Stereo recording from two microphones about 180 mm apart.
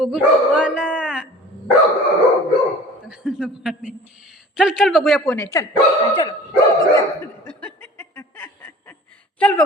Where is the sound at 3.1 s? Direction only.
5° right (ahead or behind).